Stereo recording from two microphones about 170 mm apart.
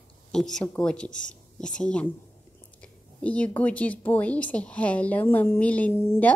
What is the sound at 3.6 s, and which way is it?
A woman's voice, 10° left (ahead or behind).